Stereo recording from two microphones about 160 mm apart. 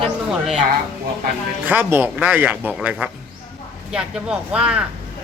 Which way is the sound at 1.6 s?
10° right (ahead or behind).